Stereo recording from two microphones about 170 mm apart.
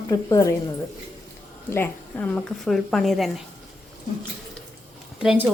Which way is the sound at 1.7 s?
10° left (ahead or behind).